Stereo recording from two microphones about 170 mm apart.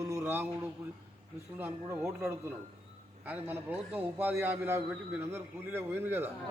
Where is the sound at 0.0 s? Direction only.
15° right (ahead or behind).